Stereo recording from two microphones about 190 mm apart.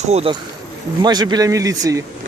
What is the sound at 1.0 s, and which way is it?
Speech, 20° right (ahead or behind).